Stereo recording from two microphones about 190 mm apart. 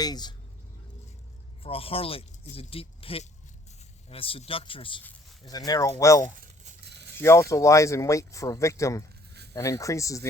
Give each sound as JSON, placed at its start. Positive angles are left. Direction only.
{"t": 0.0, "sound": "speech", "side_deg": 20}
{"t": 1.6, "sound": "speech", "side_deg": 30}
{"t": 6.8, "sound": "a sound", "side_deg": -60}
{"t": 7.2, "sound": "speech", "side_deg": 15}